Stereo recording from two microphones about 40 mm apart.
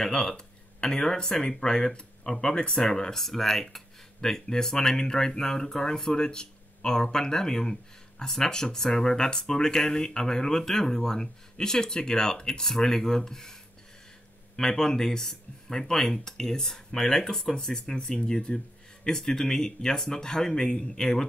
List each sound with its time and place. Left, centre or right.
0.0 s speech: centre
14.6 s speech: centre
19.0 s speech: centre